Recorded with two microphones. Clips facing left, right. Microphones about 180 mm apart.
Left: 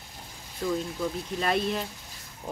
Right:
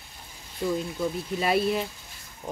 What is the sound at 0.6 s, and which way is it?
Speech, 10° right (ahead or behind).